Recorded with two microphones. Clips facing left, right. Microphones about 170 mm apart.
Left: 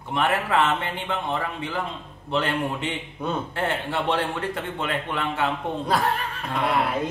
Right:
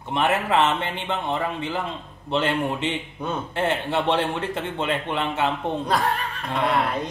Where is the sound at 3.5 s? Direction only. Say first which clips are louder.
Right 3 dB; 20° right (ahead or behind).